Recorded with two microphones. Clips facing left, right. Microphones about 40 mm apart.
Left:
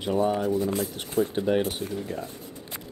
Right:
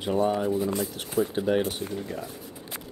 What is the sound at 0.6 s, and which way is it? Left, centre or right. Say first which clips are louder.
Speech: left 1 dB; centre.